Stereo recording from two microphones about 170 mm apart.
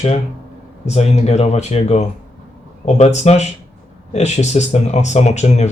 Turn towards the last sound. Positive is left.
turn(degrees=40)  # may be behind; listen again after turning